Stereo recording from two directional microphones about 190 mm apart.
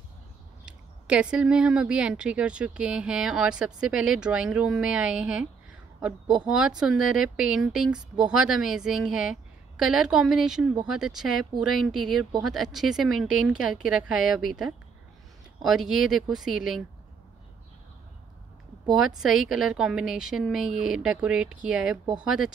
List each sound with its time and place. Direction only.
0.7 s speech: 5° right (ahead or behind)
18.9 s speech: 5° right (ahead or behind)